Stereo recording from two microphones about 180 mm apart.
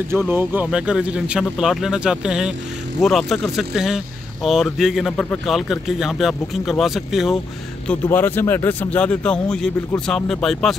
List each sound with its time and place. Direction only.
0.3 s speech: 10° right (ahead or behind)
7.9 s speech: 10° left (ahead or behind)